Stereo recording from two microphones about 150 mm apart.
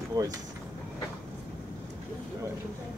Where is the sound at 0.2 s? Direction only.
25° right (ahead or behind).